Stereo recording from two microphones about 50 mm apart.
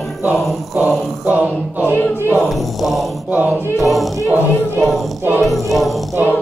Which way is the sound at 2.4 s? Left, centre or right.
Centre.